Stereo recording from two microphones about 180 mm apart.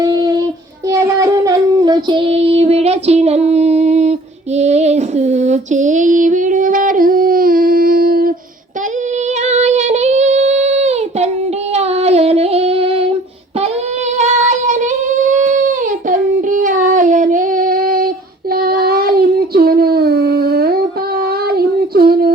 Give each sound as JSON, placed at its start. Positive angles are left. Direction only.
{"t": 0.0, "sound": "child singing", "side_deg": -20}
{"t": 4.5, "sound": "female singing", "side_deg": -40}
{"t": 9.4, "sound": "child singing", "side_deg": -40}
{"t": 11.7, "sound": "female singing", "side_deg": -35}
{"t": 14.2, "sound": "child singing", "side_deg": -45}
{"t": 15.3, "sound": "a sound", "side_deg": -45}
{"t": 16.0, "sound": "child singing", "side_deg": -45}